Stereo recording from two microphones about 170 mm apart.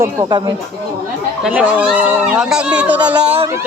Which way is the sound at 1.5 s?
10° right (ahead or behind).